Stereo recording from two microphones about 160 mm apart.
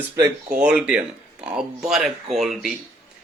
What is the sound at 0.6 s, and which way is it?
Speech, 5° right (ahead or behind).